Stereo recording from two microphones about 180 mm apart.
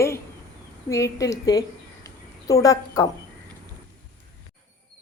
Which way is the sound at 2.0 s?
20° left (ahead or behind).